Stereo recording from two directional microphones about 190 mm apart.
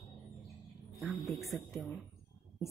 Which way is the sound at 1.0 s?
Centre (ahead or behind).